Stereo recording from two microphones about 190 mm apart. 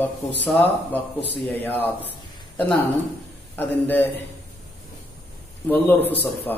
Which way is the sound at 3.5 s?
10° left (ahead or behind).